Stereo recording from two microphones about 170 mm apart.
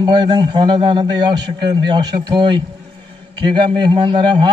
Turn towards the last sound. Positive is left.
turn(degrees=-25)  # may be behind; listen again after turning